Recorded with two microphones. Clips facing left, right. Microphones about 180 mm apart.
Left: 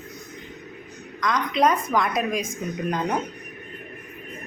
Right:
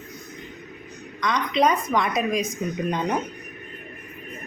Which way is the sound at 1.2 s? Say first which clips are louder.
Even; centre (ahead or behind).